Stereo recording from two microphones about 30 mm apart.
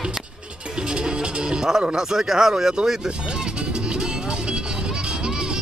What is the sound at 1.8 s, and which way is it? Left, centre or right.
Speech, centre.